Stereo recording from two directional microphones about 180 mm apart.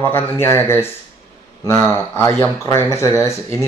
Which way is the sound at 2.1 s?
10° left (ahead or behind).